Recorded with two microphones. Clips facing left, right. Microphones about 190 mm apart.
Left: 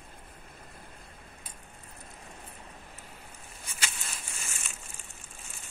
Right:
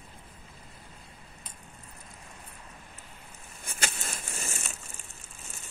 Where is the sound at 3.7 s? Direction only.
45° right (ahead or behind).